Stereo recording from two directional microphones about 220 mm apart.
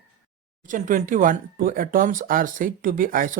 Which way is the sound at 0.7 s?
35° right (ahead or behind).